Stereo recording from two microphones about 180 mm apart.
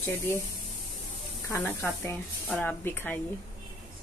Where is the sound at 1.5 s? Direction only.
15° left (ahead or behind).